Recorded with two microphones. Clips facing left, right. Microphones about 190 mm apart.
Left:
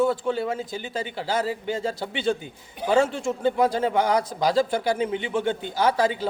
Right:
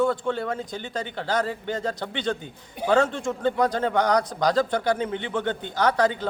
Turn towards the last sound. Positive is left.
turn(degrees=10)  # may be behind; listen again after turning